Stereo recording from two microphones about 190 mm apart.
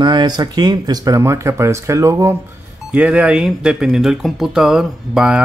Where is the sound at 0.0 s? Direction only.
20° right (ahead or behind).